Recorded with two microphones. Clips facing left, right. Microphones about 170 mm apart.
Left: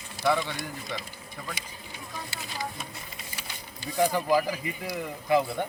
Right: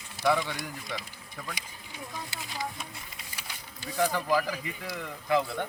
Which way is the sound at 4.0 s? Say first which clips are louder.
Left 3 dB; 10° left (ahead or behind).